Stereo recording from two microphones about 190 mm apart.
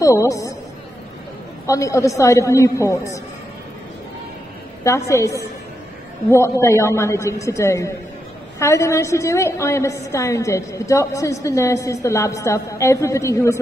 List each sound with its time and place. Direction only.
0.0 s a woman's voice: 15° left (ahead or behind)
1.7 s a woman's voice: 15° left (ahead or behind)
4.8 s a woman's voice: 15° left (ahead or behind)